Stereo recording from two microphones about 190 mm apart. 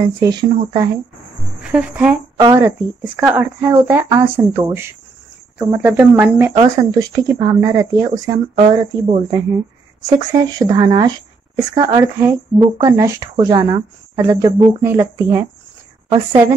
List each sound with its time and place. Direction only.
0.0 s speech: 20° right (ahead or behind)
1.6 s a woman's voice: 5° right (ahead or behind)
8.1 s speech: 35° right (ahead or behind)
10.0 s a woman's voice: 20° right (ahead or behind)